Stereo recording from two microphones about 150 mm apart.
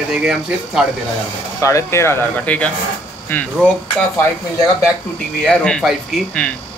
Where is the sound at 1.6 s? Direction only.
20° left (ahead or behind).